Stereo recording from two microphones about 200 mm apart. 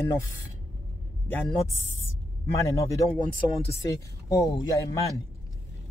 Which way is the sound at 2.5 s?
15° left (ahead or behind).